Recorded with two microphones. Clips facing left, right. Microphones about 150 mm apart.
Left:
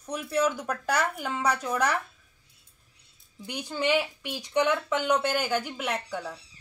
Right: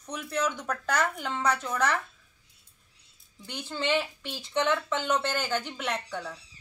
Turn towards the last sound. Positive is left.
turn(degrees=10)  # may be behind; listen again after turning